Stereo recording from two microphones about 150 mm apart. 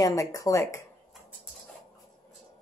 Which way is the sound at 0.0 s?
25° left (ahead or behind).